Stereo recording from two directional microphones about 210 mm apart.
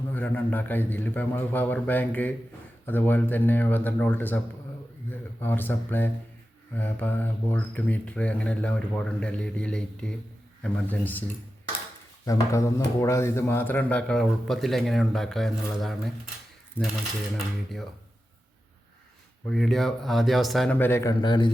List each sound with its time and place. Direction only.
0.1 s speech: 10° left (ahead or behind)
12.2 s speech: 15° left (ahead or behind)
19.5 s speech: centre (ahead or behind); by 21.5 s 20° left (ahead or behind)